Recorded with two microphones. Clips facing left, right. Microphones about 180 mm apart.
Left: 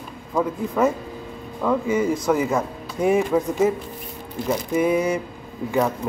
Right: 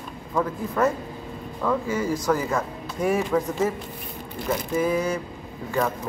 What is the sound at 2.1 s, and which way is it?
Speech, centre (ahead or behind).